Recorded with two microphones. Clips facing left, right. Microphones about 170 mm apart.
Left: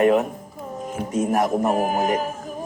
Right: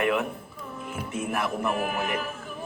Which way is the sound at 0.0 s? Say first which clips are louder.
Left 8 dB; 40° left (ahead or behind).